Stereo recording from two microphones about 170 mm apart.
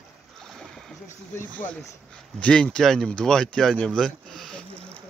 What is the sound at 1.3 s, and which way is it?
Speech, 10° left (ahead or behind).